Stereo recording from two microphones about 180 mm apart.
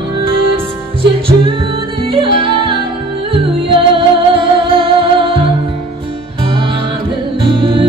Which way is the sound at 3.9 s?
30° right (ahead or behind).